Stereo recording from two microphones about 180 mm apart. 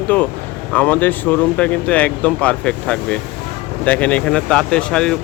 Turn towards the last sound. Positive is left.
turn(degrees=5)  # may be behind; listen again after turning